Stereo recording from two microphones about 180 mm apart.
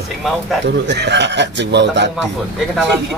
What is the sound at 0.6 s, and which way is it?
Speech, 70° right (ahead or behind).